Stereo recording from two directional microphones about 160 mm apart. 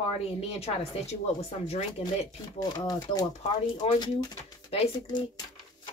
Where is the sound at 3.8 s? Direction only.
40° left (ahead or behind).